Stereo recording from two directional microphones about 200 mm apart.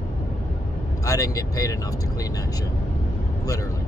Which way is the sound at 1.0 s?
15° left (ahead or behind).